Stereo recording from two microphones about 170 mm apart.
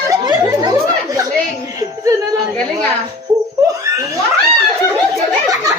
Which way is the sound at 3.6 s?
20° right (ahead or behind).